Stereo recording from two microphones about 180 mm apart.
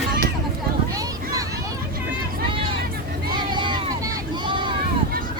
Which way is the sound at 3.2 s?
25° right (ahead or behind).